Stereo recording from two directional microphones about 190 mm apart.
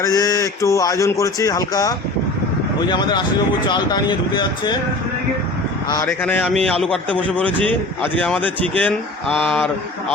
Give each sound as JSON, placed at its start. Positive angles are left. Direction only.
{"t": 0.0, "sound": "speech", "side_deg": 20}
{"t": 6.1, "sound": "speech", "side_deg": 10}